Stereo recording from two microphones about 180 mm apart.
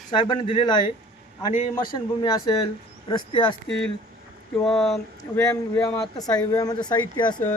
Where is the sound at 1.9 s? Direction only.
25° left (ahead or behind).